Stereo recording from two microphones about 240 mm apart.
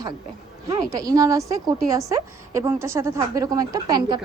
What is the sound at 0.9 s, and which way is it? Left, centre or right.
A woman's voice, centre.